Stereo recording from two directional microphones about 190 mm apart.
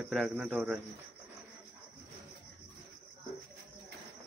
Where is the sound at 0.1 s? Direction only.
5° right (ahead or behind).